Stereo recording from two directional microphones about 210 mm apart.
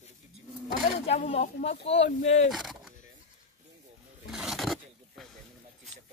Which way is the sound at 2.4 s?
Centre (ahead or behind).